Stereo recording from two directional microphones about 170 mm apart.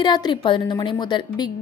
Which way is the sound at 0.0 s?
25° left (ahead or behind).